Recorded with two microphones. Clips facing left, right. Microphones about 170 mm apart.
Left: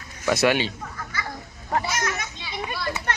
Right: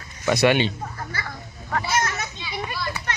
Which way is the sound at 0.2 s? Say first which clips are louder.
Right 2 dB; centre (ahead or behind).